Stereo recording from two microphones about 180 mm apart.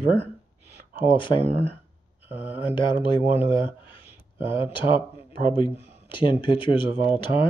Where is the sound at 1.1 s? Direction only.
25° left (ahead or behind).